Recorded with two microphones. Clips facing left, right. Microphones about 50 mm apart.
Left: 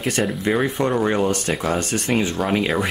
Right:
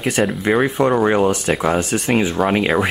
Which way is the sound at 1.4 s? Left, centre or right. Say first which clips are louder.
Right 4 dB; centre.